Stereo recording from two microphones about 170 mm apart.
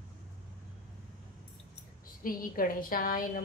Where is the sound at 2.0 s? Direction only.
55° left (ahead or behind).